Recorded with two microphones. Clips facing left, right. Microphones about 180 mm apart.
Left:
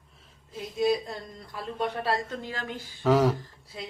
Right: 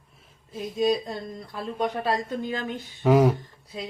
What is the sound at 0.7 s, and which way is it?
Speech, 15° right (ahead or behind).